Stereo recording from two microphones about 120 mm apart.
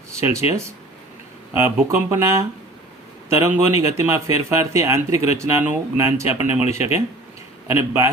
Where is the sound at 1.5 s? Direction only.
20° right (ahead or behind).